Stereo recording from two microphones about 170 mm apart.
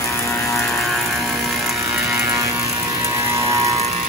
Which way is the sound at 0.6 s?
5° left (ahead or behind).